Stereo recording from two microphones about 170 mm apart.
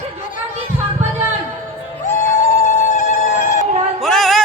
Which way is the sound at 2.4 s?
45° left (ahead or behind).